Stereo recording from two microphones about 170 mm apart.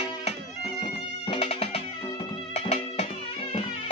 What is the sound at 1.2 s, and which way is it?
Music, 35° left (ahead or behind).